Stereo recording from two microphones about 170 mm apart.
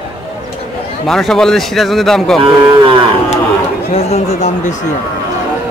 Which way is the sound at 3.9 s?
40° left (ahead or behind).